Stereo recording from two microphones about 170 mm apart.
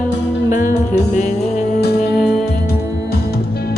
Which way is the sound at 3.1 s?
65° left (ahead or behind).